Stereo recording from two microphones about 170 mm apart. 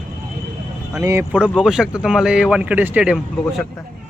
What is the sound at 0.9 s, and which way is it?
Speech, 15° right (ahead or behind).